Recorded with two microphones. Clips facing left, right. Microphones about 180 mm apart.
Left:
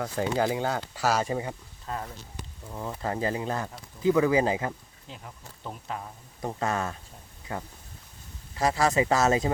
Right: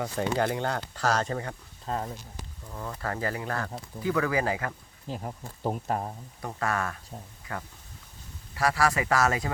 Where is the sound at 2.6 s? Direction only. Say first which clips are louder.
Left 2 dB; 15° left (ahead or behind).